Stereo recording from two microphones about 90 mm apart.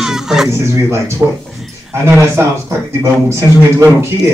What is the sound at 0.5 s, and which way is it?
A man's voice, 30° right (ahead or behind).